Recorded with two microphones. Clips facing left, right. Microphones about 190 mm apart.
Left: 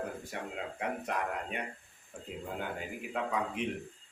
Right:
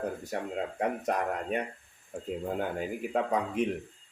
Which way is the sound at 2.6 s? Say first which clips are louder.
Right 7 dB; 45° right (ahead or behind).